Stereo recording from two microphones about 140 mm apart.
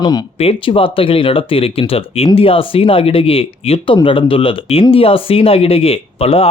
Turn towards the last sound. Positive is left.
turn(degrees=45)  # may be behind; listen again after turning